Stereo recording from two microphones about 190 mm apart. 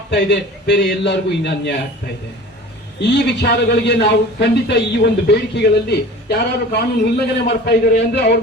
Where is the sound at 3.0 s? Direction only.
60° left (ahead or behind).